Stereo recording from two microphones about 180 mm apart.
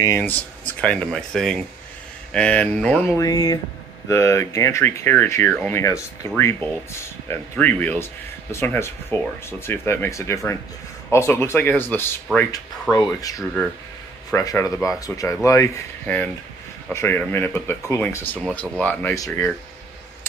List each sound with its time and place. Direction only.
0.7 s speech: 5° left (ahead or behind)
3.2 s speech: 20° left (ahead or behind)